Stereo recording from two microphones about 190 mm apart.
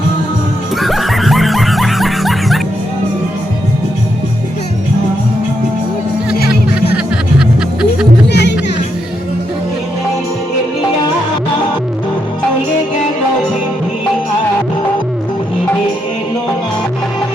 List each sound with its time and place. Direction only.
0.8 s music: centre (ahead or behind)
6.9 s music: 5° right (ahead or behind)
8.3 s music: 65° left (ahead or behind)